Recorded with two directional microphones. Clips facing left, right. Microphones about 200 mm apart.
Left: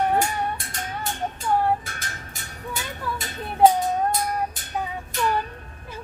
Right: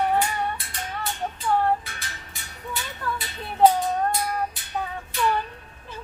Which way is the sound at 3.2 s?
45° left (ahead or behind).